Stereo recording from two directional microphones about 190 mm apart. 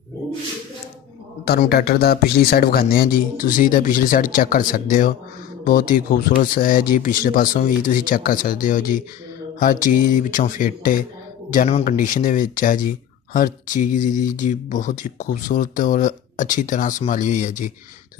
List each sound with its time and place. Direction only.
1.4 s speech: 55° left (ahead or behind)